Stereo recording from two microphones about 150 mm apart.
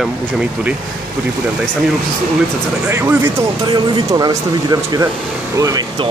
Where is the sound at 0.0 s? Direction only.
5° right (ahead or behind).